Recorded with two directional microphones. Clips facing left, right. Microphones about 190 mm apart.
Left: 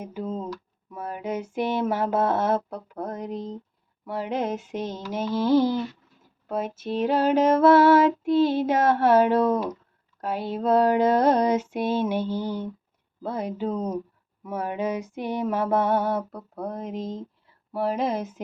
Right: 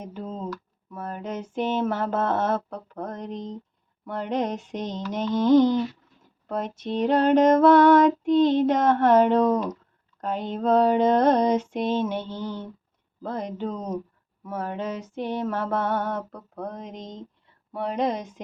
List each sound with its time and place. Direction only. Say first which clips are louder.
0.0 s speech: left 2 dB; 10° left (ahead or behind)
4.0 s female singing: right 1 dB; 5° left (ahead or behind)